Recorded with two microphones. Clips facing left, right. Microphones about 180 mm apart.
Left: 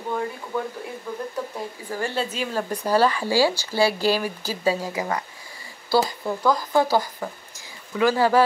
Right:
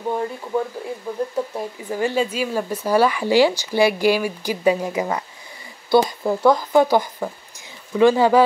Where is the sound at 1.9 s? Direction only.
15° right (ahead or behind).